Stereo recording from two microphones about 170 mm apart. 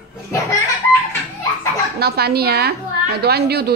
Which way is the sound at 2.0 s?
70° right (ahead or behind).